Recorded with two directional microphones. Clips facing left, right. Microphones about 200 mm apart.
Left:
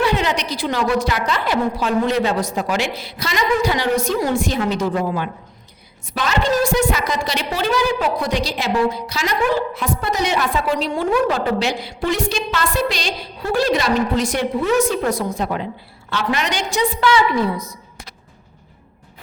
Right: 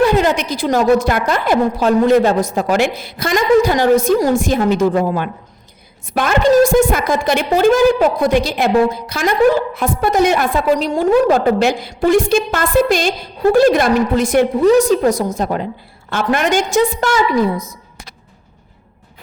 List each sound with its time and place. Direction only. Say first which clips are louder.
0.0 s a woman's voice: right 6 dB; 45° right (ahead or behind)
14.6 s a woman's voice: right 6 dB; 40° right (ahead or behind)